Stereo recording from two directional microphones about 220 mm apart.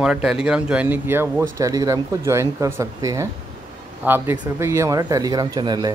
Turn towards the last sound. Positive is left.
turn(degrees=-20)  # may be behind; listen again after turning